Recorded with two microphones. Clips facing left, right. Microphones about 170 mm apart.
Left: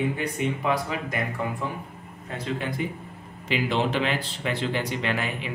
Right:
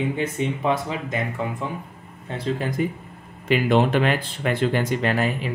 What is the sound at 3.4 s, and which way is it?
Speech, 50° right (ahead or behind).